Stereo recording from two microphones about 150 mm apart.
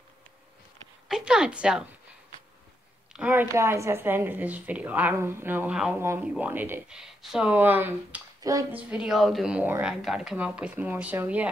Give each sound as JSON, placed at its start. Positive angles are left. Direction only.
{"t": 1.0, "sound": "a woman's voice", "side_deg": -5}
{"t": 3.1, "sound": "speech", "side_deg": -10}
{"t": 8.4, "sound": "speech", "side_deg": -25}
{"t": 8.7, "sound": "a woman's voice", "side_deg": -5}